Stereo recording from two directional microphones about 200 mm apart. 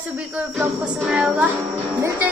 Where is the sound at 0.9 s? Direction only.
Centre (ahead or behind).